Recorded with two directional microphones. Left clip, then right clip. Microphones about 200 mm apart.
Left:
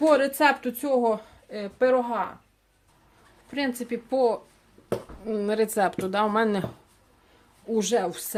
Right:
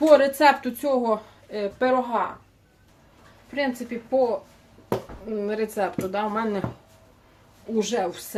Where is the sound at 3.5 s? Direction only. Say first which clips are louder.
Right 2 dB; 50° left (ahead or behind).